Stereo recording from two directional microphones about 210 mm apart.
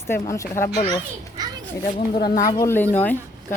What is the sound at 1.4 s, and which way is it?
Children playing, 20° right (ahead or behind).